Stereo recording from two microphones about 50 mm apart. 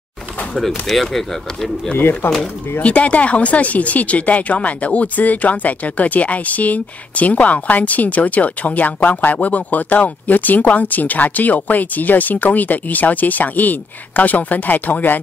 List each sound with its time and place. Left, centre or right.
0.6 s speech: centre
2.0 s speech: left
2.8 s speech: left